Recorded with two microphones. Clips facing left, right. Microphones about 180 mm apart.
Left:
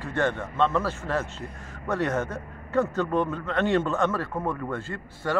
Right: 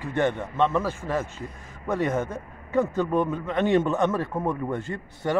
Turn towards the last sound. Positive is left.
turn(degrees=-20)  # may be behind; listen again after turning